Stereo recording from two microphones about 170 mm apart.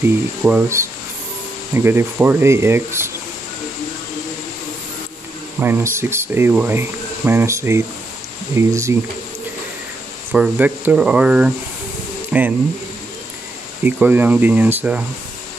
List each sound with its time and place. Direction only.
0.0 s speech: 10° right (ahead or behind)
5.6 s speech: 15° right (ahead or behind)
10.3 s speech: 10° right (ahead or behind)
13.8 s speech: 10° right (ahead or behind)